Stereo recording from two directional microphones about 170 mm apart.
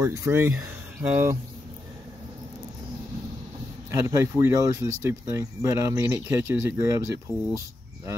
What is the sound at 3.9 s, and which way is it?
Speech, 15° right (ahead or behind).